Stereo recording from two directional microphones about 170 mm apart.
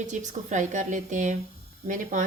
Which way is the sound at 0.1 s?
45° right (ahead or behind).